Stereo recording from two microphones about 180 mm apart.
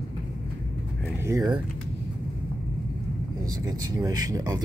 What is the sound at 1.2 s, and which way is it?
Speech, 15° right (ahead or behind).